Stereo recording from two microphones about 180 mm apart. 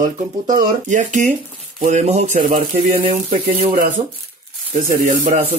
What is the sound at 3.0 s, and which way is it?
Speech, 40° right (ahead or behind).